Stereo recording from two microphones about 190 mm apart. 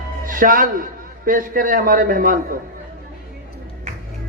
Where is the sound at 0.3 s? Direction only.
45° right (ahead or behind).